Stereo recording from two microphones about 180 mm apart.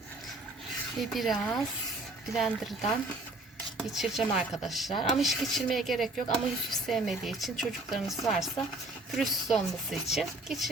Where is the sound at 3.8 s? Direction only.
Centre (ahead or behind).